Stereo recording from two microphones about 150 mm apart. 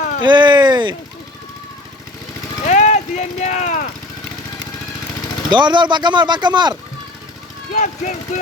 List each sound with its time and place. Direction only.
0.2 s speech: 30° right (ahead or behind)
2.6 s vehicle: 50° left (ahead or behind)
5.5 s speech: 30° right (ahead or behind)
7.7 s speech: 55° left (ahead or behind)